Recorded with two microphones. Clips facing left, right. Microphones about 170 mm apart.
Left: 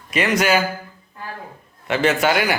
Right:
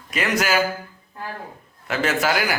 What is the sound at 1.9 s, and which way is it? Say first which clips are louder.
Speech: left 4 dB; centre (ahead or behind).